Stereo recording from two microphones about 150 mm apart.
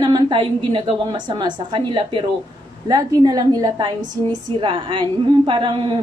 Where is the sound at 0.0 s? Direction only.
30° right (ahead or behind).